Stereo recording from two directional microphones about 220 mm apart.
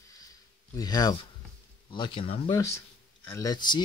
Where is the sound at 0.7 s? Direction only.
20° left (ahead or behind).